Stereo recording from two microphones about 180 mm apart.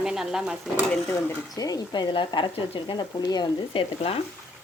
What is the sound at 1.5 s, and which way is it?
Speech, 20° left (ahead or behind).